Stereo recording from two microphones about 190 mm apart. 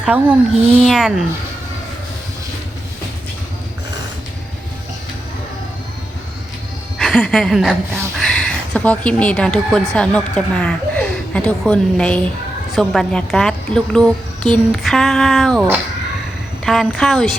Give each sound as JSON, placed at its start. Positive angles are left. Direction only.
{"t": 0.0, "sound": "a woman's voice", "side_deg": -5}
{"t": 7.0, "sound": "a woman's voice", "side_deg": 0}
{"t": 16.6, "sound": "a woman's voice", "side_deg": 0}